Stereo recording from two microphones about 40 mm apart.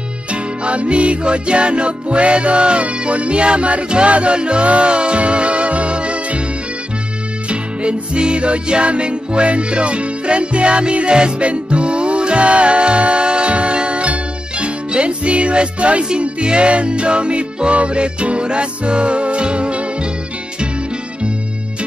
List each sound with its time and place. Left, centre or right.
0.3 s music: right
7.4 s music: right